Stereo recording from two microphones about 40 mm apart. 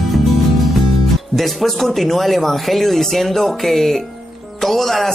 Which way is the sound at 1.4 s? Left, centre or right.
Centre.